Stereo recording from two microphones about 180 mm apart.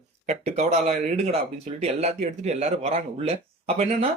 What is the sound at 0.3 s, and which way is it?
Speech, 40° right (ahead or behind).